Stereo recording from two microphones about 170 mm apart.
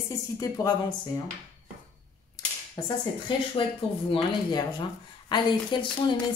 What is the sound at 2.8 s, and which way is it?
Speech, 25° left (ahead or behind).